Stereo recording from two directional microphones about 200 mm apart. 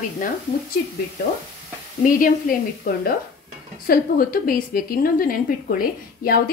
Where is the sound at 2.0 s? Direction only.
45° left (ahead or behind).